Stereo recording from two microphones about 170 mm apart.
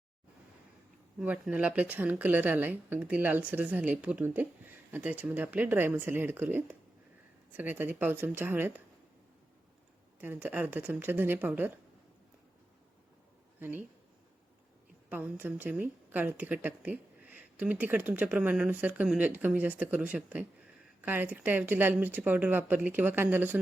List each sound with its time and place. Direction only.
1.2 s a woman's voice: 10° right (ahead or behind)
10.2 s a woman's voice: 10° right (ahead or behind)
13.6 s a woman's voice: 10° right (ahead or behind)
15.1 s a woman's voice: 10° right (ahead or behind)